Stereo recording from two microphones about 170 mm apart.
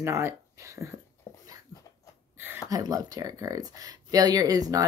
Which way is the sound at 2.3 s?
10° right (ahead or behind).